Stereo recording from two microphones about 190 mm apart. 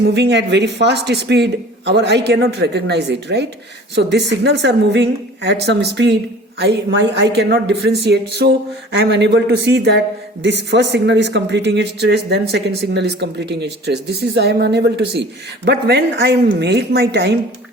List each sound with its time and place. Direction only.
0.0 s speech: 65° right (ahead or behind)